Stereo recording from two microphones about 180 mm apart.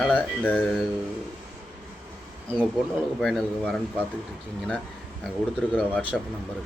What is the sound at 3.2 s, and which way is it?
Speech, 5° left (ahead or behind).